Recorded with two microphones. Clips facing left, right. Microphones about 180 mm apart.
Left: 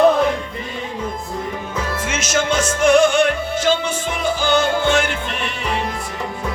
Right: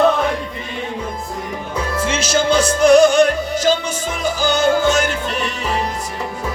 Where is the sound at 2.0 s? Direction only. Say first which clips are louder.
Right 4 dB; 30° right (ahead or behind).